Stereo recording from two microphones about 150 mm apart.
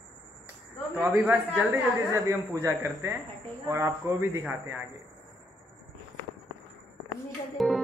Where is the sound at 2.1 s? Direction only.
20° right (ahead or behind).